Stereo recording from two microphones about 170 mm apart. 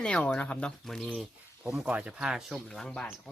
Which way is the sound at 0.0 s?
5° left (ahead or behind).